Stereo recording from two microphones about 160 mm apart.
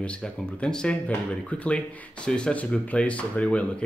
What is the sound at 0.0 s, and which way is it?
Speech, 5° left (ahead or behind).